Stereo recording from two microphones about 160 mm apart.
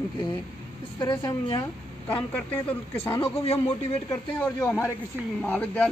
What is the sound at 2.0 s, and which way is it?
Speech, 10° left (ahead or behind).